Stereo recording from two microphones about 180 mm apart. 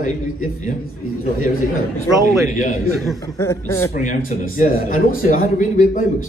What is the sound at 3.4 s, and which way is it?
Speech, 15° left (ahead or behind).